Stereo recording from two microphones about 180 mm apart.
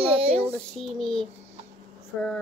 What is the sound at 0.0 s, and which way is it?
Child singing, 35° right (ahead or behind).